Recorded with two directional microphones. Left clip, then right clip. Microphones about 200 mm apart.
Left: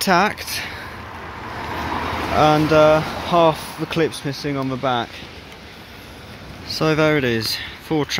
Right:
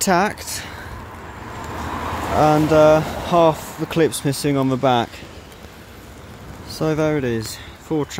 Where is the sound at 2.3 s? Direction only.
20° right (ahead or behind).